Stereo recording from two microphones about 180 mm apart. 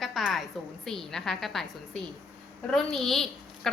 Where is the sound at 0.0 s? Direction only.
Centre (ahead or behind).